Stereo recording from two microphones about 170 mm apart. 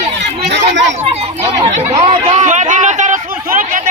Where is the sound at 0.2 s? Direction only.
85° right.